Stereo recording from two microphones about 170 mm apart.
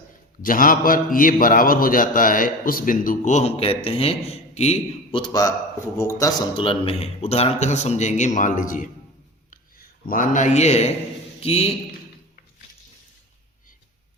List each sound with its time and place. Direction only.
0.4 s a man's voice: 55° left (ahead or behind); by 6.7 s 20° left (ahead or behind)
6.7 s a man's voice: 35° left (ahead or behind)